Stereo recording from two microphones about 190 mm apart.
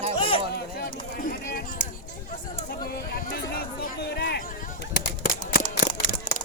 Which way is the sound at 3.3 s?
50° left (ahead or behind).